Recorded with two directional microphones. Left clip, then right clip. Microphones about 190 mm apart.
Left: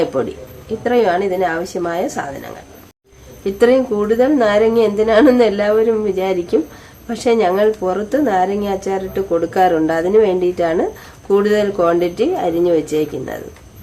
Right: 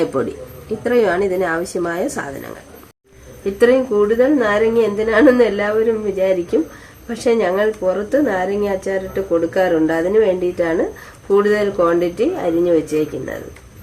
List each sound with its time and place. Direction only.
0.1 s speech: centre (ahead or behind)
3.6 s a woman's voice: 20° left (ahead or behind)